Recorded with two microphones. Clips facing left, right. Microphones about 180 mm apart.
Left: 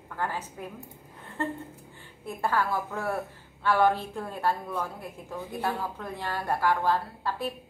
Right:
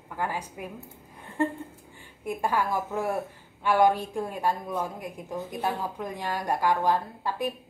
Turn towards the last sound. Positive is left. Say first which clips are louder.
# right 2 dB
turn(degrees=-15)  # may be behind; listen again after turning